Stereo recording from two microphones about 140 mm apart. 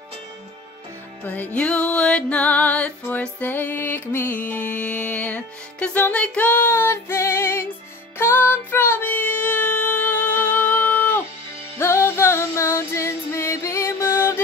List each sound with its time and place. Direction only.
1.2 s music: 10° left (ahead or behind)